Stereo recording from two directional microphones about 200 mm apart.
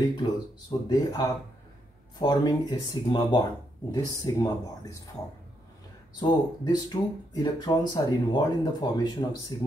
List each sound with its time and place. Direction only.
0.2 s speech: 20° left (ahead or behind)
6.1 s speech: 20° left (ahead or behind)